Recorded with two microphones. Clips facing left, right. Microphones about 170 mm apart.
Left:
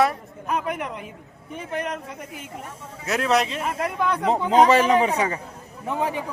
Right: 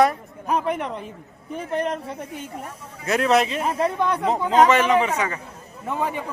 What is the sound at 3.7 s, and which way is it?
Speech, 30° right (ahead or behind).